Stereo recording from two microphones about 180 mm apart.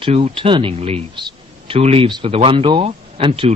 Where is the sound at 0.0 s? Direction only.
35° right (ahead or behind).